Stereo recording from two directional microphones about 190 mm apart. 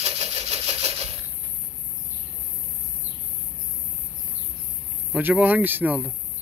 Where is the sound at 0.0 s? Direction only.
30° right (ahead or behind).